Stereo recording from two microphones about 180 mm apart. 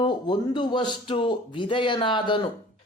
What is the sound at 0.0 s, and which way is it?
Speech, 25° left (ahead or behind).